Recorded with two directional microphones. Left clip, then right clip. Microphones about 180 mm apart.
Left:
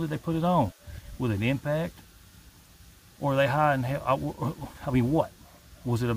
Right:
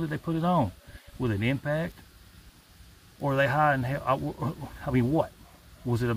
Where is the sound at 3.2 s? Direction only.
20° left (ahead or behind).